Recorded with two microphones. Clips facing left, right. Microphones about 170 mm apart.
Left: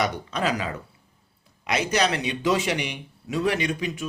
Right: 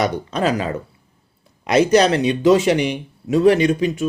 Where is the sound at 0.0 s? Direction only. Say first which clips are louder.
Right 6 dB; 35° right (ahead or behind).